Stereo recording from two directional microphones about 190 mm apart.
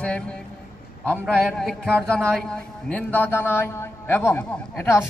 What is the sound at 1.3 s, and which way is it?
A man's voice, centre (ahead or behind).